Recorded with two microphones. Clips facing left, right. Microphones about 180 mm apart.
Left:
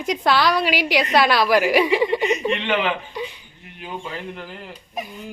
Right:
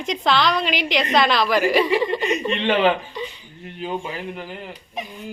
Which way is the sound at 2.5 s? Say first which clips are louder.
Right 3 dB; 30° right (ahead or behind).